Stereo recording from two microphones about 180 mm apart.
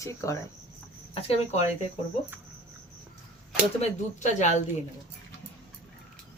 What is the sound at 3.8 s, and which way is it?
Speech, 40° left (ahead or behind).